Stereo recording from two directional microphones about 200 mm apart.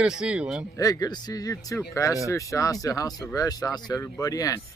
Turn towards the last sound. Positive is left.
turn(degrees=15)  # may be behind; listen again after turning